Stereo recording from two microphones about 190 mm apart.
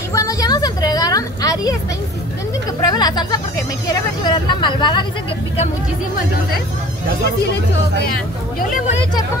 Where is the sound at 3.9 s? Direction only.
25° left (ahead or behind).